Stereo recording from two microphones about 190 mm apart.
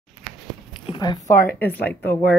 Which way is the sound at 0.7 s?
25° left (ahead or behind).